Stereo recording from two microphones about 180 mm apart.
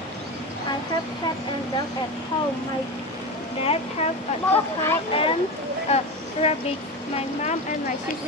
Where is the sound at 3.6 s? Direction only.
35° left (ahead or behind).